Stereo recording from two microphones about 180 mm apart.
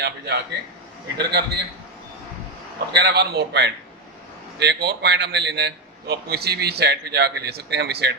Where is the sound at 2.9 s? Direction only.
65° right (ahead or behind).